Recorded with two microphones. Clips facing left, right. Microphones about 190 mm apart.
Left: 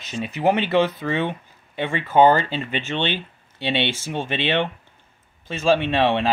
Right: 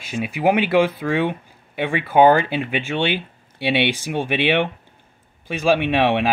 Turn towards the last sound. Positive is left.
turn(degrees=-10)  # may be behind; listen again after turning